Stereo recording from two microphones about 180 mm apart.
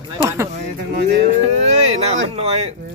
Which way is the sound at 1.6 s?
35° right (ahead or behind).